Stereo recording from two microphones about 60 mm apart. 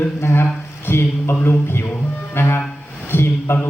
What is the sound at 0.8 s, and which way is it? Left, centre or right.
Speech, left.